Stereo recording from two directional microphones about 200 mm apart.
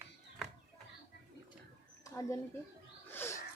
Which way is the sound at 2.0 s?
15° left (ahead or behind).